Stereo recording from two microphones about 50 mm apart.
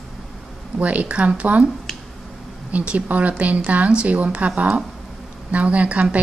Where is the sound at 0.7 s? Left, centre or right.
Right.